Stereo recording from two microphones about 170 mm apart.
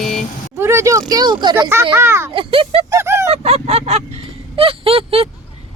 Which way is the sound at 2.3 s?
30° right (ahead or behind).